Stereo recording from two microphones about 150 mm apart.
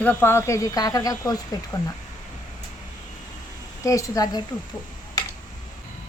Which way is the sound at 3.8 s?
20° left (ahead or behind).